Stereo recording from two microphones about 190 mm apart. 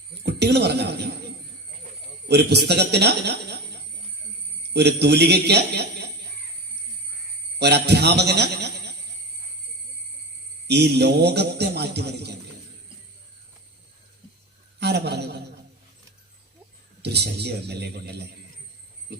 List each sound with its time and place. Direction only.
0.2 s a man's voice: 60° right (ahead or behind)
2.2 s a man's voice: 60° right (ahead or behind)
4.7 s a man's voice: 60° right (ahead or behind)
7.6 s a man's voice: 60° right (ahead or behind)
10.7 s a man's voice: 60° right (ahead or behind)
14.8 s a man's voice: 60° right (ahead or behind)
17.0 s a man's voice: 60° right (ahead or behind)